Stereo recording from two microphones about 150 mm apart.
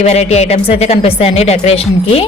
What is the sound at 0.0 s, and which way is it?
Speech, 45° left (ahead or behind).